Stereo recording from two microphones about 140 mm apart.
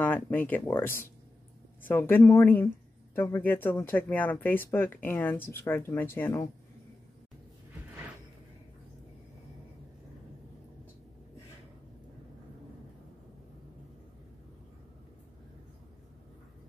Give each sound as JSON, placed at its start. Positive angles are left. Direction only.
{"t": 0.0, "sound": "speech", "side_deg": 15}